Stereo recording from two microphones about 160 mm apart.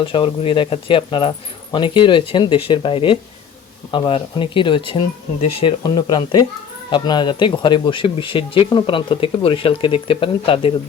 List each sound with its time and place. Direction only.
0.0 s speech: 30° left (ahead or behind)